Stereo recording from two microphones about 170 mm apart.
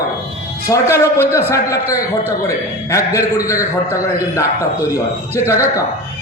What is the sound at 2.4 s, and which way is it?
A man's voice, 20° left (ahead or behind).